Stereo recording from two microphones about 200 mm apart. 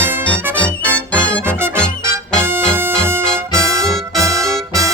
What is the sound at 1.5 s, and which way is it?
Music, 10° right (ahead or behind).